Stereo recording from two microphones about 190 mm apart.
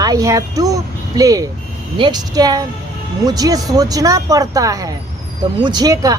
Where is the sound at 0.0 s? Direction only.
20° right (ahead or behind).